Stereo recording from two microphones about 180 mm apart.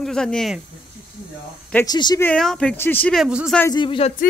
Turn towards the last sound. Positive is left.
turn(degrees=30)  # may be behind; listen again after turning